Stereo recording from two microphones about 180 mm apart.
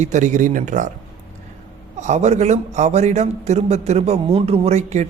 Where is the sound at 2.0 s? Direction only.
40° right (ahead or behind).